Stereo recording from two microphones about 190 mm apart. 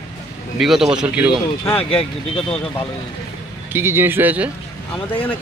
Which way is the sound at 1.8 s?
30° left (ahead or behind).